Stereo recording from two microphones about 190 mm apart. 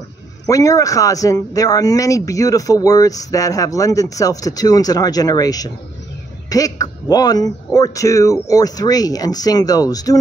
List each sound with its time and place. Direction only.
0.5 s a man's voice: 15° left (ahead or behind)